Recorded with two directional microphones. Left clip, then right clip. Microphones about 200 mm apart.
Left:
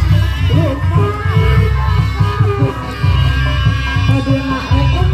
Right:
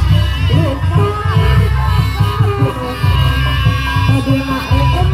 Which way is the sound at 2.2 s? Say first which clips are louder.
Left 1 dB; 55° right (ahead or behind).